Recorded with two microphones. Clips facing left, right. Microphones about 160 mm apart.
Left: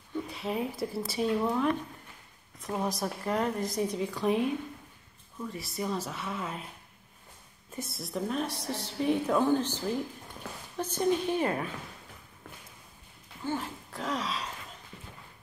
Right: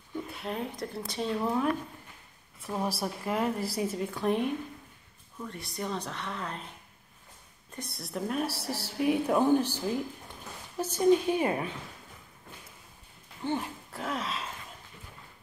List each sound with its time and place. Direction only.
0.3 s a woman's voice: centre (ahead or behind)
7.7 s a woman's voice: centre (ahead or behind); by 11.7 s 15° right (ahead or behind)
13.4 s speech: 20° right (ahead or behind)
13.9 s speech: 5° right (ahead or behind)